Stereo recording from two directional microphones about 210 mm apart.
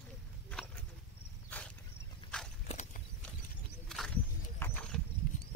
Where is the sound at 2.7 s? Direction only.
35° left (ahead or behind).